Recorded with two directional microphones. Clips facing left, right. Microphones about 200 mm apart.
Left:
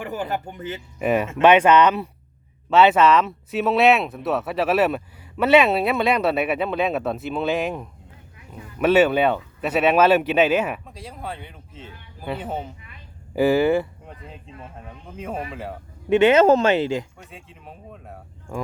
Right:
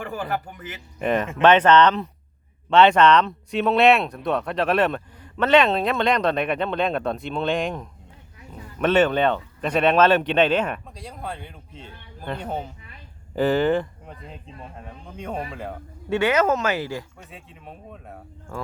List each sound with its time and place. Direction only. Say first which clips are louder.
0.0 s speech: left 1 dB; 20° left (ahead or behind)
0.9 s speech: left 1 dB; 10° left (ahead or behind)
15.0 s speech: left 1 dB; 5° left (ahead or behind)
16.0 s speech: left 6 dB; 20° left (ahead or behind)
17.2 s speech: even; centre (ahead or behind)
18.5 s speech: left 3 dB; 15° left (ahead or behind)